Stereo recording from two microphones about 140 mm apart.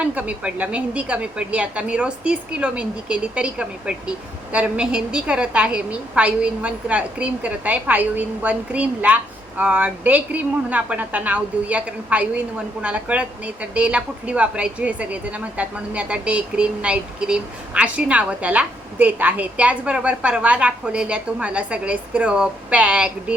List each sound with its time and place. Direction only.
0.0 s speech: 10° right (ahead or behind)